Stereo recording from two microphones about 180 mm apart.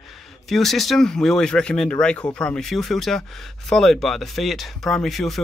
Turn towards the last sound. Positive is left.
turn(degrees=0)  # may be behind; listen again after turning